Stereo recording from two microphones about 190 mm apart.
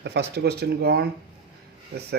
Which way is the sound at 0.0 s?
60° right (ahead or behind).